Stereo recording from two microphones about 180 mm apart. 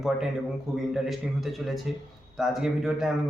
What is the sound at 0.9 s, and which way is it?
Speech, centre (ahead or behind).